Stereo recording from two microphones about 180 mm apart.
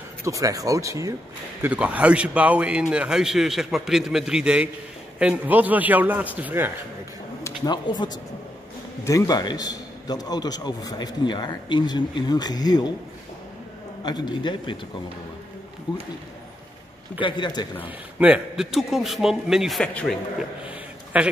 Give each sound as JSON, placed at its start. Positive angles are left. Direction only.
{"t": 0.2, "sound": "a man's voice", "side_deg": -20}
{"t": 1.6, "sound": "a man's voice", "side_deg": -5}
{"t": 7.4, "sound": "a man's voice", "side_deg": 25}
{"t": 14.0, "sound": "a man's voice", "side_deg": 25}
{"t": 17.2, "sound": "a man's voice", "side_deg": 25}
{"t": 17.8, "sound": "a man's voice", "side_deg": -5}
{"t": 20.6, "sound": "a sound", "side_deg": -5}